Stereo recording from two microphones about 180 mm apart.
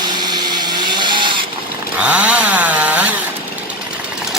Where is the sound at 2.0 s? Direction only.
5° right (ahead or behind).